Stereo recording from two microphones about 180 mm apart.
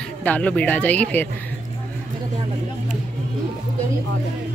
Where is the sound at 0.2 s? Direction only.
10° left (ahead or behind).